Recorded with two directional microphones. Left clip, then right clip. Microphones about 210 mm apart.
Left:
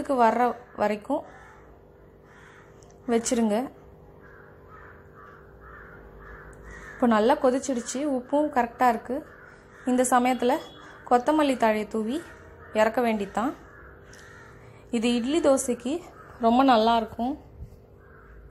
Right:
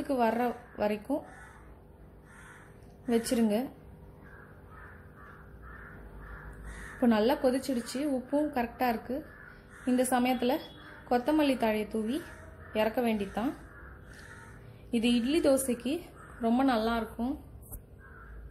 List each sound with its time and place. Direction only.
0.1 s a woman's voice: 5° left (ahead or behind)
3.1 s a woman's voice: 5° left (ahead or behind)
7.0 s a woman's voice: 5° left (ahead or behind)
14.9 s a woman's voice: 10° left (ahead or behind)
16.3 s speech: 20° left (ahead or behind)